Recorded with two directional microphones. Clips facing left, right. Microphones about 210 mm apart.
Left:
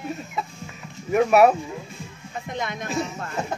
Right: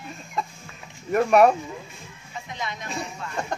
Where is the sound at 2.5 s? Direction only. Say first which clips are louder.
Left 4 dB; 50° left (ahead or behind).